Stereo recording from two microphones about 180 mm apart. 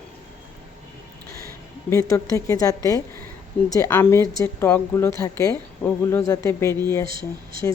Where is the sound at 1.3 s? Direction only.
55° right (ahead or behind).